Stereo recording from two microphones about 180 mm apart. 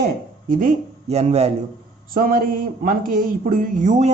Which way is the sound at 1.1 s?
35° right (ahead or behind).